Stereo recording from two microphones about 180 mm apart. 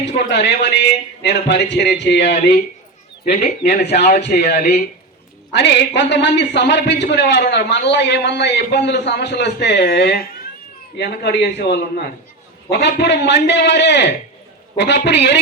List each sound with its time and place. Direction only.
0.0 s a man's voice: 70° left (ahead or behind)
3.8 s speech: 65° left (ahead or behind)
5.5 s a man's voice: 75° left (ahead or behind)